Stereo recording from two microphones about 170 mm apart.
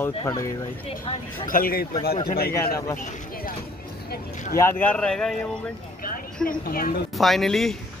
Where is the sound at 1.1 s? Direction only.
35° left (ahead or behind).